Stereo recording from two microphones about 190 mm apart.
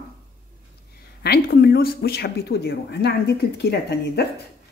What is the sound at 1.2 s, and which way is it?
Speech, 55° left (ahead or behind).